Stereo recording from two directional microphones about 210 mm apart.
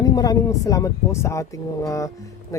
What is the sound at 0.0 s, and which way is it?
Speech, 15° left (ahead or behind).